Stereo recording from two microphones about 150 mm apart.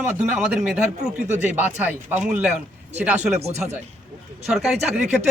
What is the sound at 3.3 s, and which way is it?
Speech, 50° right (ahead or behind).